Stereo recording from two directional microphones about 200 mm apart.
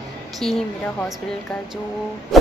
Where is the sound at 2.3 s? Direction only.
Centre (ahead or behind).